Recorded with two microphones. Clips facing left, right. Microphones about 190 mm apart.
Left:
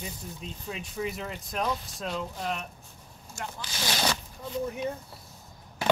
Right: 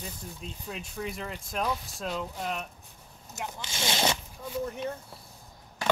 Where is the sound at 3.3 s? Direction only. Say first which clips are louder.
Right 1 dB; 20° right (ahead or behind).